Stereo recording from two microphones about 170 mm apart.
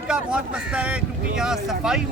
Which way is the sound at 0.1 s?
5° right (ahead or behind).